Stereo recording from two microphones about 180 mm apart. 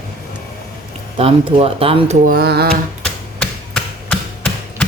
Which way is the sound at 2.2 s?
60° right (ahead or behind).